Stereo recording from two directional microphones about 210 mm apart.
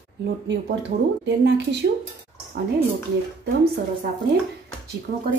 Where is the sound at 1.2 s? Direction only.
55° right (ahead or behind).